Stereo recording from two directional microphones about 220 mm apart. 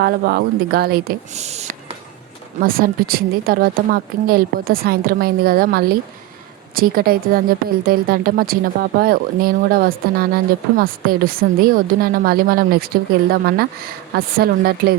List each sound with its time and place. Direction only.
0.0 s a woman's voice: 45° right (ahead or behind)
2.6 s a woman's voice: 40° right (ahead or behind)